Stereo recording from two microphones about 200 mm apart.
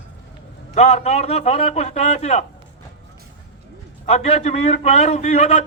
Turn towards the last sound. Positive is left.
turn(degrees=35)  # may be behind; listen again after turning